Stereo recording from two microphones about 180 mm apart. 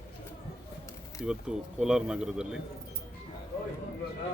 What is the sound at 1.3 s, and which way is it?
Speech, 5° right (ahead or behind).